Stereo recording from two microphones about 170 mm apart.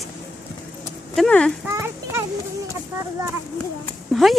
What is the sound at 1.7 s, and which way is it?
Speech, 15° right (ahead or behind).